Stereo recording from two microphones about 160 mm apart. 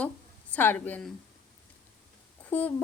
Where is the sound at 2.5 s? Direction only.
10° left (ahead or behind).